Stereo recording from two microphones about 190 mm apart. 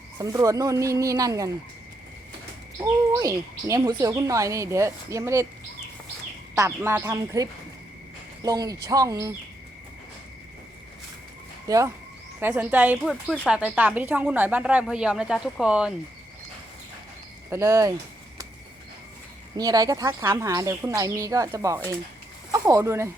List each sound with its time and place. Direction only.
0.2 s speech: 20° right (ahead or behind)
3.1 s speech: 15° right (ahead or behind)
6.6 s speech: 15° right (ahead or behind)
11.7 s speech: 20° right (ahead or behind)
13.2 s speech: 5° left (ahead or behind)
17.5 s speech: 15° right (ahead or behind)
19.5 s speech: 20° right (ahead or behind)